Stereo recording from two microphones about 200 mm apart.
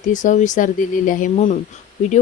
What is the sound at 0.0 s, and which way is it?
Speech, 40° left (ahead or behind).